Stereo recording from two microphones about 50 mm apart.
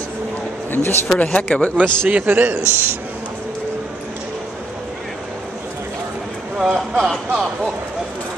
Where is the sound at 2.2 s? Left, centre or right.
Right.